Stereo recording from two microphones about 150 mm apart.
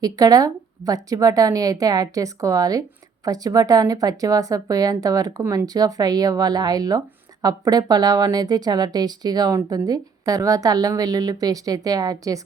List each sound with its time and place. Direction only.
0.0 s a woman's voice: 25° right (ahead or behind)